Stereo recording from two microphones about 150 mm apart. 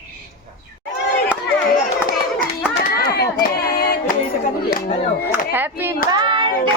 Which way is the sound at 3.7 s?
90° left.